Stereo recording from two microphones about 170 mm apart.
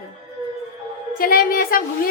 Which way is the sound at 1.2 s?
55° left (ahead or behind).